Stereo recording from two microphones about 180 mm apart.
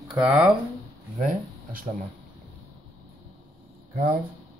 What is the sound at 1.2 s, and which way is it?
Speech, 45° right (ahead or behind).